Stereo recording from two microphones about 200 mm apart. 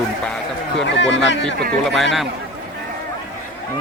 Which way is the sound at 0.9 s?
65° left (ahead or behind).